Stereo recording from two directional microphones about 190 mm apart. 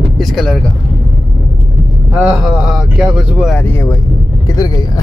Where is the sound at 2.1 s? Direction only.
5° right (ahead or behind).